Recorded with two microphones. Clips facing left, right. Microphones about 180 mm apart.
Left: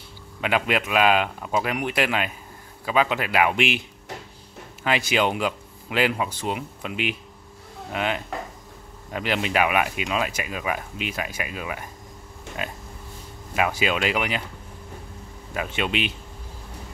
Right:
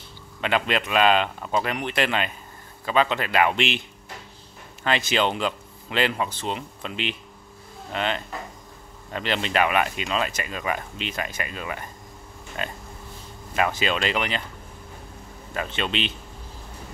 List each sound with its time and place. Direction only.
0.4 s speech: 5° left (ahead or behind)
4.8 s speech: 10° left (ahead or behind)
15.5 s speech: 10° left (ahead or behind)